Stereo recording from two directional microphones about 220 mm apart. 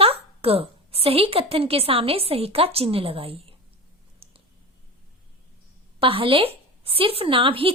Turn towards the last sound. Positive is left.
turn(degrees=-25)  # may be behind; listen again after turning